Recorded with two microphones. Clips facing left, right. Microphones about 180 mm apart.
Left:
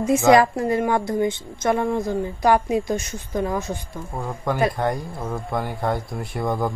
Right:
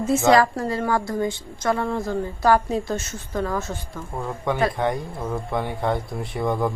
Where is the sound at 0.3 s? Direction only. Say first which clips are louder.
Left 3 dB; 20° left (ahead or behind).